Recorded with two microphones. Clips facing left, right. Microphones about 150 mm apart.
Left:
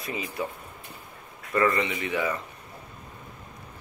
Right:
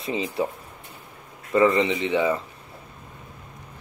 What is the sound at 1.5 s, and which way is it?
Speech, 20° right (ahead or behind).